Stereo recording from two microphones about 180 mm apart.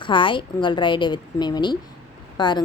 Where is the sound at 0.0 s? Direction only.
25° left (ahead or behind).